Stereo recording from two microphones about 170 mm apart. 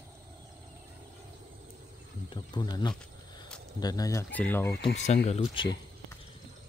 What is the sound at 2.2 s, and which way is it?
Speech, 25° left (ahead or behind).